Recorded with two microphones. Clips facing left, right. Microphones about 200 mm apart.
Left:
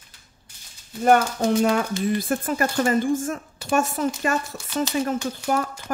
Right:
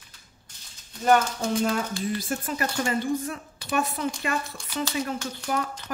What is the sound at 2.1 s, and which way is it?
Speech, 55° left (ahead or behind).